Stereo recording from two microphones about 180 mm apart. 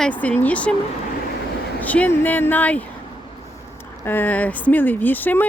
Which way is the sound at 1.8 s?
10° left (ahead or behind).